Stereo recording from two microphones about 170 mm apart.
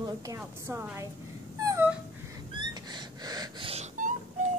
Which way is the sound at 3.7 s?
45° right (ahead or behind).